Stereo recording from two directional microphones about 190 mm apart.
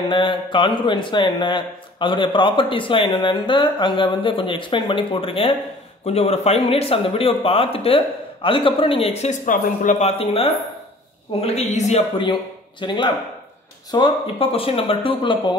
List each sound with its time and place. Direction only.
0.1 s a man's voice: 25° left (ahead or behind)
12.8 s speech: 25° left (ahead or behind)